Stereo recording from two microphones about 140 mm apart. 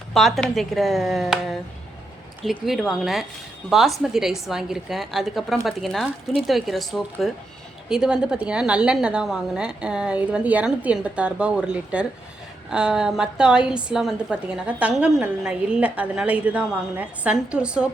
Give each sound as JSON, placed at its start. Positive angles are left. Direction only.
{"t": 0.1, "sound": "a woman's voice", "side_deg": 0}